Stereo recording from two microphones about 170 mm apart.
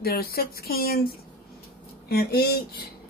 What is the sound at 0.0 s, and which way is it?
Speech, 65° left (ahead or behind).